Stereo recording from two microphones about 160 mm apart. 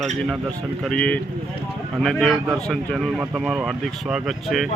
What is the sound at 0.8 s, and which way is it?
Speech, 5° left (ahead or behind).